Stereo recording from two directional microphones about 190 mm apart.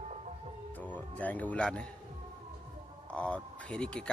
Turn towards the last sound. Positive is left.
turn(degrees=5)  # may be behind; listen again after turning